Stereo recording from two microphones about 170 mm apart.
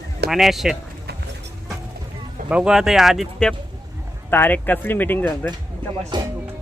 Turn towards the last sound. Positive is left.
turn(degrees=-25)  # may be behind; listen again after turning